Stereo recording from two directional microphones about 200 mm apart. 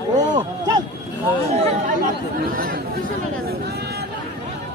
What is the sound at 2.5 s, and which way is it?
Chatter, 45° right (ahead or behind).